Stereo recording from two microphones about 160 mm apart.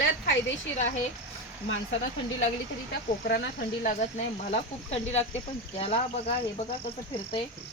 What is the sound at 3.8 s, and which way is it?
A woman's voice, 50° left (ahead or behind).